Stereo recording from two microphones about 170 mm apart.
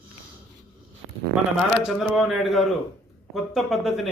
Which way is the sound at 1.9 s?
Centre (ahead or behind).